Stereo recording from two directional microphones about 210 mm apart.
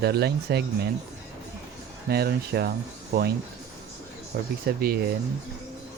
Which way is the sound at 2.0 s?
45° right (ahead or behind).